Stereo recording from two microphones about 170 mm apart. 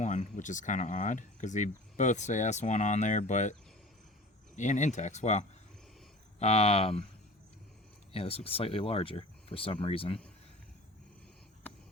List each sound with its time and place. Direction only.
0.0 s speech: 45° left (ahead or behind)
4.5 s speech: 45° left (ahead or behind)
8.1 s speech: 35° left (ahead or behind)